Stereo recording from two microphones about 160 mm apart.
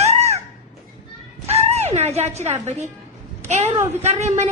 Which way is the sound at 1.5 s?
40° right (ahead or behind).